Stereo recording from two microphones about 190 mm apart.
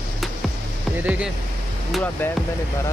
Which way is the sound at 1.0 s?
5° right (ahead or behind).